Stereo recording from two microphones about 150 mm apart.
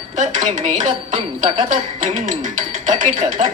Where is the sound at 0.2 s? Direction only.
55° right (ahead or behind).